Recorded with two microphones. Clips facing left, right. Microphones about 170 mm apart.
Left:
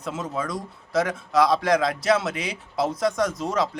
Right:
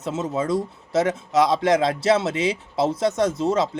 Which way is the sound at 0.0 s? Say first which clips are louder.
Right 4 dB; 25° right (ahead or behind).